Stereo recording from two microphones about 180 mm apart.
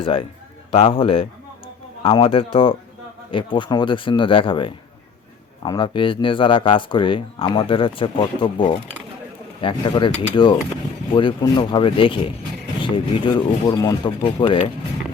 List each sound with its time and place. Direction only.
0.0 s a man's voice: 30° left (ahead or behind)